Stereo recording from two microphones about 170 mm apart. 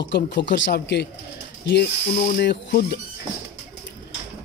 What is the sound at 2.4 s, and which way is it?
Speech, 75° left (ahead or behind).